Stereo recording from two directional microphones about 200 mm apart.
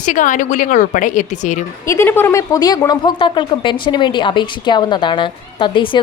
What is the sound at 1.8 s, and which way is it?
Speech, 10° left (ahead or behind).